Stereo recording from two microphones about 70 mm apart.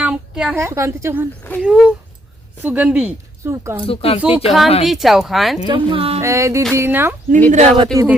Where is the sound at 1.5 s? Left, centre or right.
Left.